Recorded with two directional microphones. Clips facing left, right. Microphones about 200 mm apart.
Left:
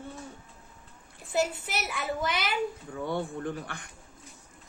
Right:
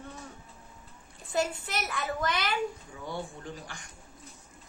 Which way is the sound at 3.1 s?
55° left (ahead or behind).